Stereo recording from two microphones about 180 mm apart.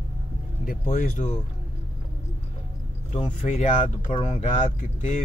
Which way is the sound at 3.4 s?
40° left (ahead or behind).